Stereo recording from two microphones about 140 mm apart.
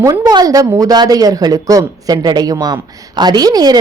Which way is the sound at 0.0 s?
25° right (ahead or behind).